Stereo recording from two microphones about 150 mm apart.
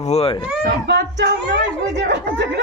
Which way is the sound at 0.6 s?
90° right.